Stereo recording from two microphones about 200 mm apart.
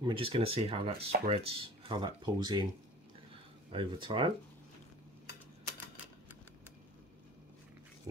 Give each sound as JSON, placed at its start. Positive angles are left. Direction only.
{"t": 0.0, "sound": "speech", "side_deg": -25}
{"t": 3.7, "sound": "speech", "side_deg": -25}